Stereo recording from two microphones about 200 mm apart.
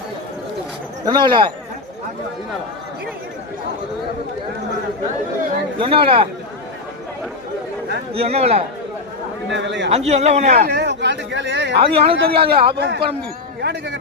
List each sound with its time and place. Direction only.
1.1 s a man's voice: 25° right (ahead or behind)
5.8 s a man's voice: 25° right (ahead or behind)
8.1 s speech: 30° right (ahead or behind)
9.5 s speech: 65° right (ahead or behind)
9.9 s speech: 35° right (ahead or behind)
10.7 s speech: 55° right (ahead or behind)
11.8 s a man's voice: 25° right (ahead or behind)
12.7 s speech: 55° right (ahead or behind)